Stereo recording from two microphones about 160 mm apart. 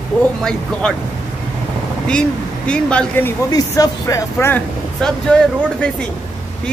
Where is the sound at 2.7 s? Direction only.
5° left (ahead or behind).